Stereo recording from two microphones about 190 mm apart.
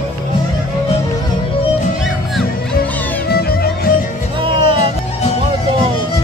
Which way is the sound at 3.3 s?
55° left (ahead or behind).